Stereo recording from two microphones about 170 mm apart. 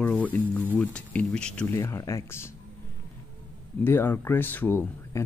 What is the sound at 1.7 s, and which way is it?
Speech, 20° left (ahead or behind).